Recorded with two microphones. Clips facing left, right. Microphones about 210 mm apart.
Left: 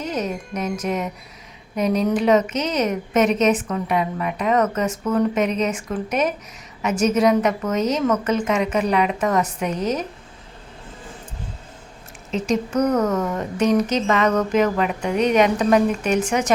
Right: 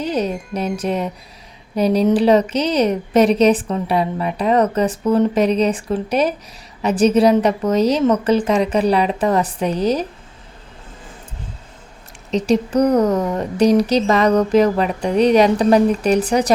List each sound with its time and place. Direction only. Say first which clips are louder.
0.0 s a woman's voice: right 5 dB; 30° right (ahead or behind)
12.3 s a woman's voice: right 5 dB; 35° right (ahead or behind)